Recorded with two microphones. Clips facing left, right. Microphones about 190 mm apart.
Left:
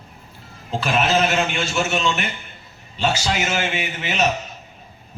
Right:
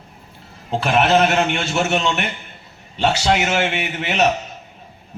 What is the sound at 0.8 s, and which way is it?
A man's voice, 60° right (ahead or behind).